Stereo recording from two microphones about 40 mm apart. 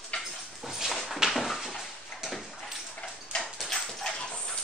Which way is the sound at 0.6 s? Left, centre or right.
Centre.